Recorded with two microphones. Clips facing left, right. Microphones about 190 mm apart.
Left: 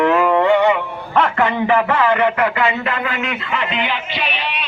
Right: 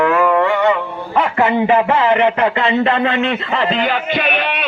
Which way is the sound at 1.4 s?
20° right (ahead or behind).